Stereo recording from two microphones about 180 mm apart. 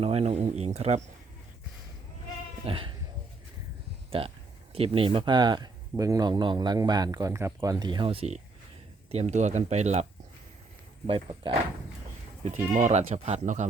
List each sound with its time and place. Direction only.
0.0 s speech: 35° right (ahead or behind)
2.6 s speech: 30° right (ahead or behind)
4.1 s speech: 30° right (ahead or behind)
12.7 s speech: 40° right (ahead or behind)